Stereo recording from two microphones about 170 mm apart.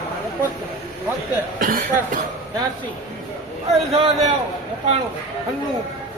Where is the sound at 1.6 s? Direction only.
55° right (ahead or behind).